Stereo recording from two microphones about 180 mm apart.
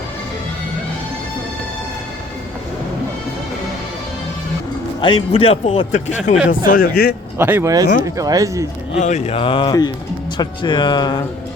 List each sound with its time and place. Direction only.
4.9 s a man's voice: 30° left (ahead or behind)
6.7 s speech: 55° left (ahead or behind)
7.3 s speech: 10° right (ahead or behind)
9.0 s speech: 40° left (ahead or behind); by 11.3 s 25° left (ahead or behind)